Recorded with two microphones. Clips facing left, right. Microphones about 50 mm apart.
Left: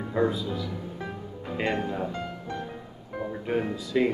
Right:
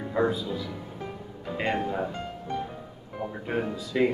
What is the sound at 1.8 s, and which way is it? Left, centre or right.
Speech, centre.